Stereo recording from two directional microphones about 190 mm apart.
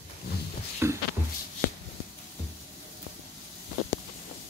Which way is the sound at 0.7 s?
15° right (ahead or behind).